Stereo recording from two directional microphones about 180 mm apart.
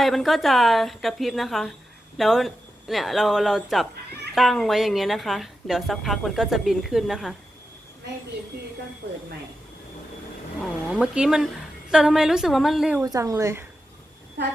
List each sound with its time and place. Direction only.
0.0 s a woman's voice: centre (ahead or behind)
10.6 s a woman's voice: 5° right (ahead or behind)
13.0 s a woman's voice: 15° right (ahead or behind)